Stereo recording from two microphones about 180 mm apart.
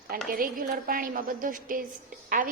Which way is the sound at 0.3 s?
50° right (ahead or behind).